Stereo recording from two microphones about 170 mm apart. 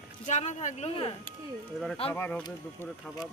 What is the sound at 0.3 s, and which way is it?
Speech, 45° left (ahead or behind).